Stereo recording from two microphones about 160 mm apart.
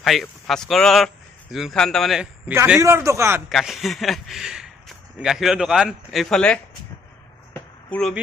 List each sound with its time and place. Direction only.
0.0 s a man's voice: centre (ahead or behind)
2.5 s a man's voice: 10° right (ahead or behind)
3.4 s a man's voice: centre (ahead or behind)
7.5 s a sound: 10° left (ahead or behind)